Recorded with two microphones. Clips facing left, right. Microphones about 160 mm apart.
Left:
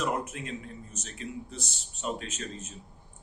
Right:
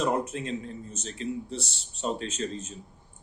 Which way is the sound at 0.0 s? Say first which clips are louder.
Right 4 dB; 30° right (ahead or behind).